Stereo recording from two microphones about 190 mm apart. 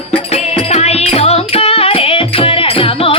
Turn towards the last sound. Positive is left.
turn(degrees=30)  # may be behind; listen again after turning